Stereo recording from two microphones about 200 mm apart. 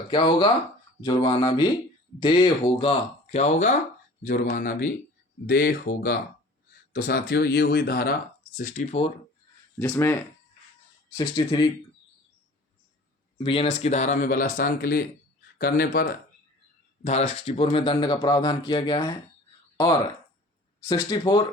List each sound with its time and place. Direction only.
0.1 s a man's voice: 25° left (ahead or behind)
3.3 s speech: 35° left (ahead or behind)
8.5 s speech: 40° left (ahead or behind)
9.7 s speech: 10° left (ahead or behind)
11.2 s a man's voice: 25° left (ahead or behind)
13.4 s a man's voice: 25° left (ahead or behind); by 16.1 s 50° left (ahead or behind)
17.0 s a man's voice: 35° left (ahead or behind)